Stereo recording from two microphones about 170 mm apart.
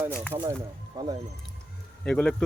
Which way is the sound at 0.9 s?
25° right (ahead or behind).